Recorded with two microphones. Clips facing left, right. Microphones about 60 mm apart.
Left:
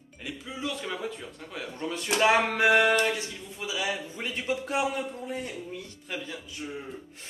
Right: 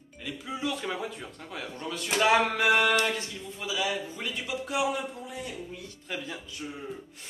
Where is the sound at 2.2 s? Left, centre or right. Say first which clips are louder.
Left 1 dB; left.